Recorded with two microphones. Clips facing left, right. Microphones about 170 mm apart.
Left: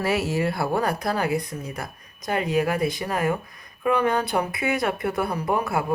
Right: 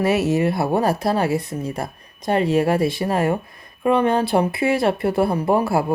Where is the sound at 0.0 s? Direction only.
25° right (ahead or behind).